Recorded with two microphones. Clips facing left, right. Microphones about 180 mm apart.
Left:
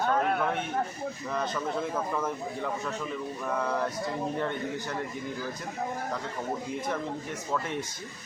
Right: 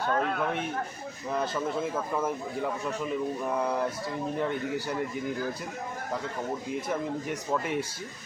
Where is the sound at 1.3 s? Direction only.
5° right (ahead or behind).